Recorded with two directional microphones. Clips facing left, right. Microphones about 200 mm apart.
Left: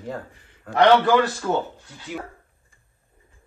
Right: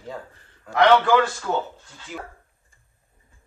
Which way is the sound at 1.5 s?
20° left (ahead or behind).